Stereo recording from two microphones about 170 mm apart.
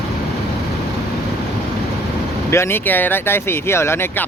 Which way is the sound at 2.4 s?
15° left (ahead or behind).